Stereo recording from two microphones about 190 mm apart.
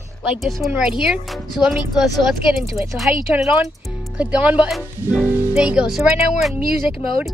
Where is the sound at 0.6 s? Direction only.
5° right (ahead or behind).